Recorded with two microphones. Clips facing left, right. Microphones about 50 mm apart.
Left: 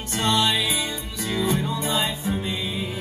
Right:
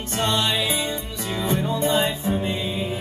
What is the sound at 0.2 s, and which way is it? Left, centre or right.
Music, right.